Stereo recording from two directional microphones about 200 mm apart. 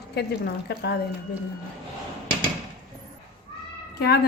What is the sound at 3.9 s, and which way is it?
Speech, 50° left (ahead or behind).